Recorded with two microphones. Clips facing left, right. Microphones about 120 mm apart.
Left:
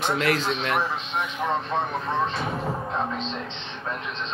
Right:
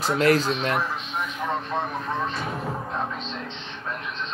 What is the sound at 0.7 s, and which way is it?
Speech, centre (ahead or behind).